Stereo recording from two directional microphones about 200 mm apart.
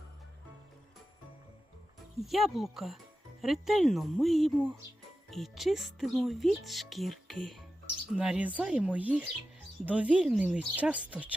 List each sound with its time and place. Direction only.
2.2 s speech: centre (ahead or behind)